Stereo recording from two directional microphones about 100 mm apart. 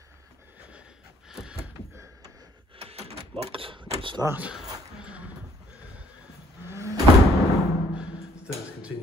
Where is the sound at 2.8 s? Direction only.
90° right; by 4.2 s 55° right (ahead or behind).